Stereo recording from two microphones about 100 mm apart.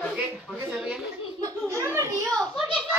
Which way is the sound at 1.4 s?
25° right (ahead or behind).